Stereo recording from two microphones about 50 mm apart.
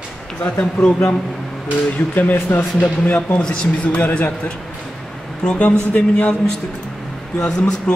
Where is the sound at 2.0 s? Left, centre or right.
Left.